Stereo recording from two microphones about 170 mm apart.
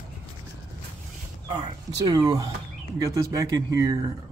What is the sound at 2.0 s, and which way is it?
Speech, 25° right (ahead or behind).